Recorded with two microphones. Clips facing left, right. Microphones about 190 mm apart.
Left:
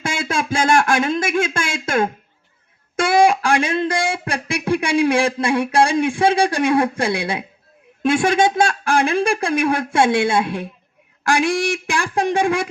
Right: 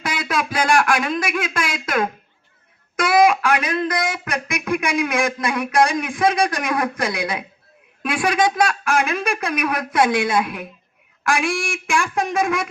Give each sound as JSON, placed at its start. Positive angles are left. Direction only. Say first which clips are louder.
{"t": 0.0, "sound": "speech", "louder": "left 1 dB", "side_deg": 25}